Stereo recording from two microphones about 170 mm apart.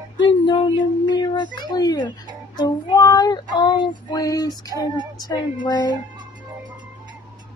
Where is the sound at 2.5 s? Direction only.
25° left (ahead or behind).